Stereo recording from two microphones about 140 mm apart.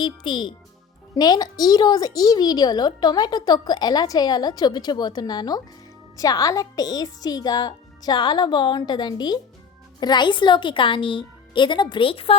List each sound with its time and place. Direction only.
0.0 s a woman's voice: 35° left (ahead or behind)